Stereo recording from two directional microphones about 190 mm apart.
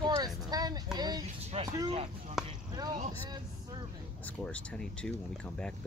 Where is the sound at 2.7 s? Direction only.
20° right (ahead or behind).